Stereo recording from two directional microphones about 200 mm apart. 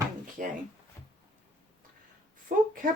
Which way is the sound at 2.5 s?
45° right (ahead or behind).